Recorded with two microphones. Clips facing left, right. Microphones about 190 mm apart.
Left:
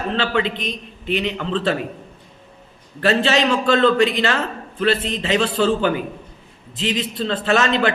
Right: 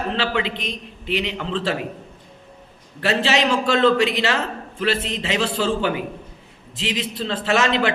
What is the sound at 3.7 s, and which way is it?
A man's voice, 20° right (ahead or behind).